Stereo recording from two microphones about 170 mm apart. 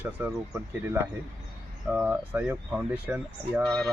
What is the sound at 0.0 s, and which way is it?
Speech, 10° right (ahead or behind).